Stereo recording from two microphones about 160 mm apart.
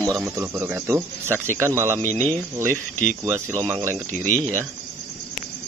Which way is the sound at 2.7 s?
10° left (ahead or behind).